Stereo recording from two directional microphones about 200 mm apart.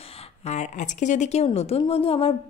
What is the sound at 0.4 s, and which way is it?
Speech, 35° left (ahead or behind).